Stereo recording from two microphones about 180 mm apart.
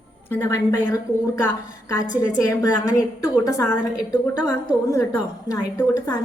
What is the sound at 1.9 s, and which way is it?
A woman's voice, 20° left (ahead or behind).